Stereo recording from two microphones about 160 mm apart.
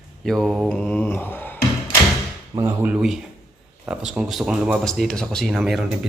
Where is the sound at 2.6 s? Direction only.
15° right (ahead or behind).